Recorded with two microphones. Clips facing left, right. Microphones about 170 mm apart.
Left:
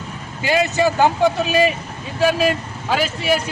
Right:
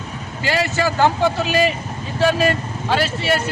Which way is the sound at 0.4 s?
20° left (ahead or behind).